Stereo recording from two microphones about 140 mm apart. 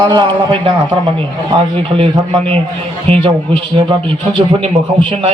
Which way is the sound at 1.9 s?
40° right (ahead or behind).